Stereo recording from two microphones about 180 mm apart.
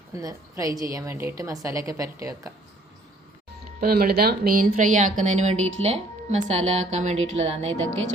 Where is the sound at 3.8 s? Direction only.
55° right (ahead or behind); by 7.9 s 35° right (ahead or behind).